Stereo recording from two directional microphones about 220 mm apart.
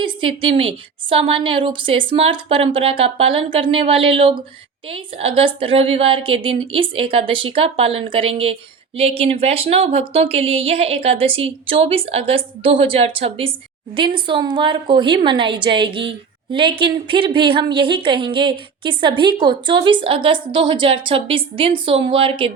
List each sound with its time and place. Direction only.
0.0 s a woman's voice: 25° right (ahead or behind)